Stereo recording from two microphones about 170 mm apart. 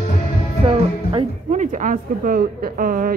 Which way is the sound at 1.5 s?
45° right (ahead or behind).